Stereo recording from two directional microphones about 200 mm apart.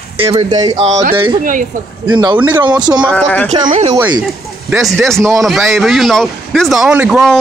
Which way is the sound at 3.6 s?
35° right (ahead or behind).